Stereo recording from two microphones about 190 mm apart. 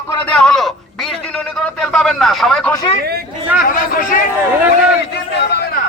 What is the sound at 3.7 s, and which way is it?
Speech, 45° left (ahead or behind).